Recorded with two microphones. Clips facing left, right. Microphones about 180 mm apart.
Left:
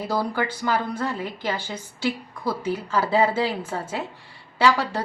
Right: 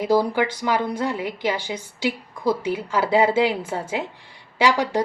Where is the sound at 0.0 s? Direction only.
15° right (ahead or behind).